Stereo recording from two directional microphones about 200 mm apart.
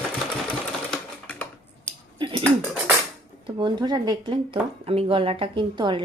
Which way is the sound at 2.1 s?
25° right (ahead or behind).